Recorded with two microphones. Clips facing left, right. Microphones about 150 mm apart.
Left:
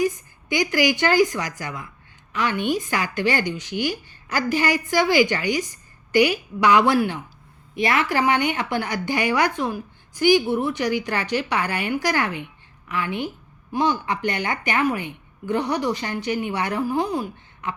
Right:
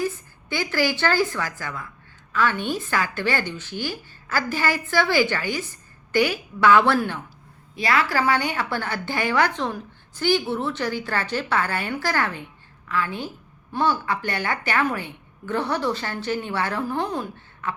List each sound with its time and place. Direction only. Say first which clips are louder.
0.0 s a woman's voice: left 4 dB; 15° left (ahead or behind)